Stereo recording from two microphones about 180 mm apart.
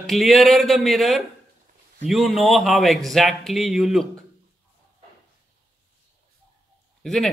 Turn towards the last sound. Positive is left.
turn(degrees=0)  # may be behind; listen again after turning